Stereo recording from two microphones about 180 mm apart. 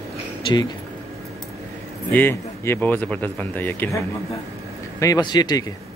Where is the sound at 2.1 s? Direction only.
10° left (ahead or behind).